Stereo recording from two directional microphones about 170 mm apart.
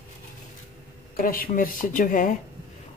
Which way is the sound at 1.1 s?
55° left (ahead or behind).